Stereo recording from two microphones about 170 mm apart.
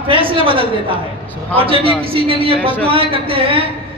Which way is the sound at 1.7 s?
35° right (ahead or behind).